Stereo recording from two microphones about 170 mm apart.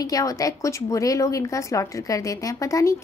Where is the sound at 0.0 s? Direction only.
20° left (ahead or behind).